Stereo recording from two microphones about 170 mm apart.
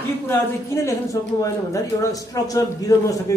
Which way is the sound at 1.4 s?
20° left (ahead or behind).